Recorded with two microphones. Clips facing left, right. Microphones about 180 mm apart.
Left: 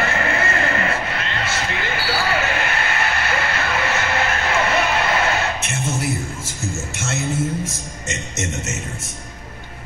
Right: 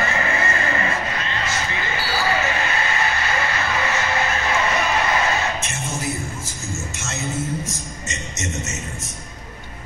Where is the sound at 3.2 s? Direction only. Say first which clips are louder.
Left 1 dB; 65° left (ahead or behind).